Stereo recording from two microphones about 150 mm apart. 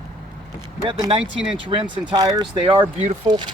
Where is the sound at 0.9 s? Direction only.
35° right (ahead or behind).